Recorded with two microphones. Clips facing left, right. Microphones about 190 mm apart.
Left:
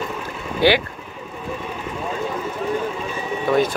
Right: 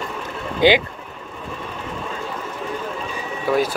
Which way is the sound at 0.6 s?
15° right (ahead or behind).